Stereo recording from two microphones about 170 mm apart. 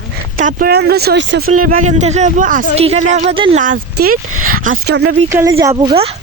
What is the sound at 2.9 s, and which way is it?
Speech, 40° right (ahead or behind).